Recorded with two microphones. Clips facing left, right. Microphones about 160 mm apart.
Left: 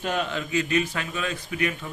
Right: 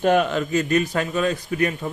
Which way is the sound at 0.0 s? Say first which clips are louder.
Right 9 dB; 55° right (ahead or behind).